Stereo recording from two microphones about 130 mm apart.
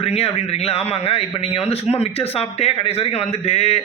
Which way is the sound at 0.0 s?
50° left (ahead or behind).